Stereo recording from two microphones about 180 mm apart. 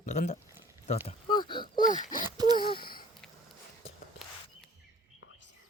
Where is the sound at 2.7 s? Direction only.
55° left (ahead or behind).